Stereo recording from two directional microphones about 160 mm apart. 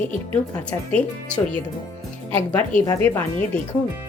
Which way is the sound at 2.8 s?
15° left (ahead or behind).